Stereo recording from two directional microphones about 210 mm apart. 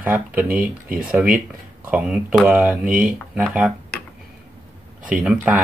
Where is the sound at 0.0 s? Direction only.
5° right (ahead or behind).